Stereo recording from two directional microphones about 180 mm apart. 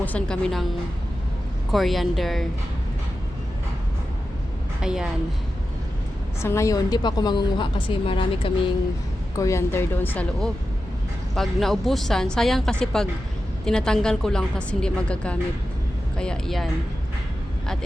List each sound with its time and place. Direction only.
0.0 s a woman's voice: 10° left (ahead or behind)
1.7 s a woman's voice: centre (ahead or behind)
4.8 s a woman's voice: 5° right (ahead or behind)
6.4 s a woman's voice: 15° left (ahead or behind)
9.4 s a woman's voice: 15° left (ahead or behind)